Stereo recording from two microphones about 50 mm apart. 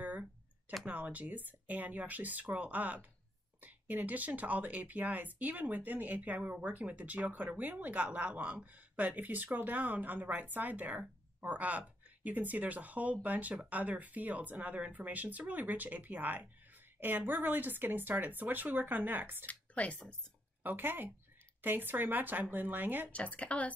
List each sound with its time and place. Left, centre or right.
0.0 s a sound: right
0.8 s speech: right
19.4 s speech: left
20.6 s speech: right
23.1 s speech: left